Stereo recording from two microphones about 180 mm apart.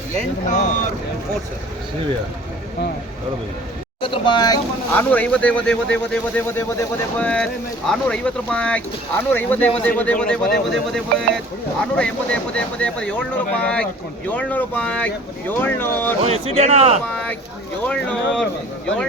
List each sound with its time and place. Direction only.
0.4 s speech: 45° left (ahead or behind)
4.0 s speech: 25° left (ahead or behind)
4.9 s speech: 10° left (ahead or behind)
16.2 s a man's voice: 35° right (ahead or behind)
17.1 s speech: 5° left (ahead or behind)